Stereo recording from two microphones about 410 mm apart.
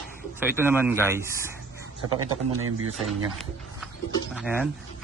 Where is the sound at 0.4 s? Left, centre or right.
Centre.